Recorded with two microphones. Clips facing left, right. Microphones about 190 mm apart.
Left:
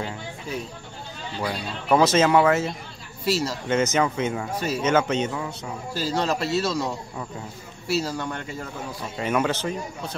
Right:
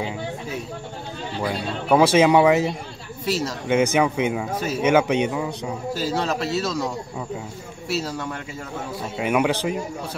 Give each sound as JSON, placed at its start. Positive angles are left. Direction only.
{"t": 1.4, "sound": "a man's voice", "side_deg": -5}
{"t": 2.0, "sound": "speech", "side_deg": -15}
{"t": 3.3, "sound": "a man's voice", "side_deg": 0}
{"t": 3.6, "sound": "speech", "side_deg": -10}
{"t": 5.9, "sound": "a man's voice", "side_deg": 0}
{"t": 9.2, "sound": "speech", "side_deg": -10}